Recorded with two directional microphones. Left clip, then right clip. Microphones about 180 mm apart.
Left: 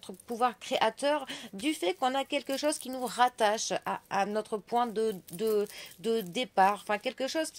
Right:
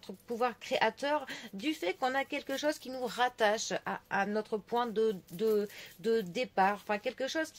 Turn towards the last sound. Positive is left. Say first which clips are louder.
# left 2 dB
turn(degrees=35)  # may be behind; listen again after turning